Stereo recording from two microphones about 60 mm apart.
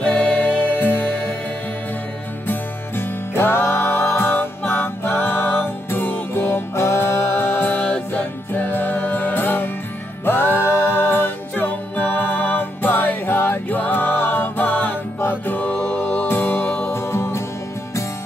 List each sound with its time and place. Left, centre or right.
0.0 s music: centre
0.7 s music: left
2.4 s music: left